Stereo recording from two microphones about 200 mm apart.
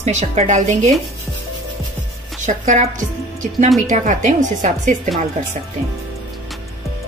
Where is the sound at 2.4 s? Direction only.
35° right (ahead or behind).